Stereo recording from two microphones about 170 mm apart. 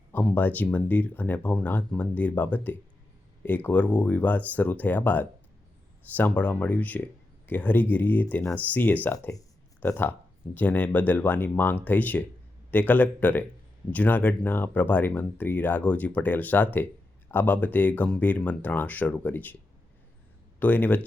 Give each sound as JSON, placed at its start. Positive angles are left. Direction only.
{"t": 0.1, "sound": "speech", "side_deg": 10}
{"t": 20.6, "sound": "speech", "side_deg": 10}